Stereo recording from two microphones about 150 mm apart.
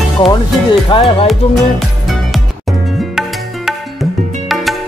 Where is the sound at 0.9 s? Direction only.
40° left (ahead or behind).